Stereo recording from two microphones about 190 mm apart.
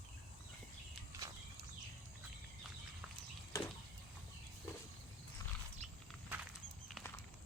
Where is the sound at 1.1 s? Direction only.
15° right (ahead or behind).